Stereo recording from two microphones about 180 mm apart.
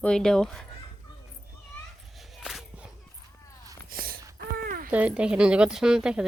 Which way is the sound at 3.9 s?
55° right (ahead or behind).